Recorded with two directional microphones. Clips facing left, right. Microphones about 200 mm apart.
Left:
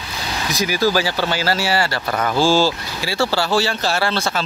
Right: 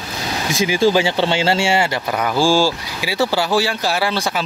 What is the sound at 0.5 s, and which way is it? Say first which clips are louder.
Speech: right 3 dB; 25° right (ahead or behind).